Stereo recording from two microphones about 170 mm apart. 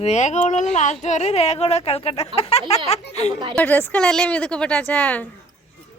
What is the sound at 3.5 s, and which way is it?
Speech, 10° left (ahead or behind).